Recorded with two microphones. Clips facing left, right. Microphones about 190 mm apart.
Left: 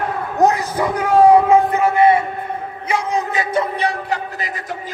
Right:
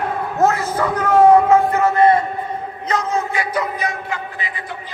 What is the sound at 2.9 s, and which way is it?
A man's voice, 15° left (ahead or behind).